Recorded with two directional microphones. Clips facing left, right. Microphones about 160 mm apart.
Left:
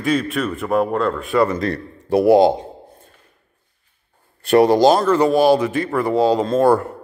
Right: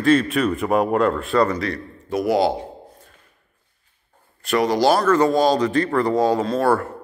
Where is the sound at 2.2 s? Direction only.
25° left (ahead or behind).